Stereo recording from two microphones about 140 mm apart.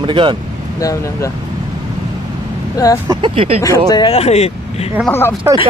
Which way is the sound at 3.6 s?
25° left (ahead or behind).